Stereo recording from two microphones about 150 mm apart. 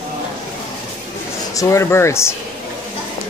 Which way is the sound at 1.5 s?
20° left (ahead or behind).